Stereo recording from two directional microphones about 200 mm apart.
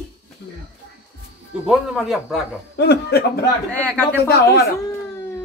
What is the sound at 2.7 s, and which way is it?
Speech, 55° left (ahead or behind).